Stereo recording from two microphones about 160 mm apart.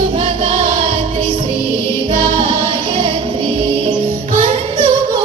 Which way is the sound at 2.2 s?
30° right (ahead or behind).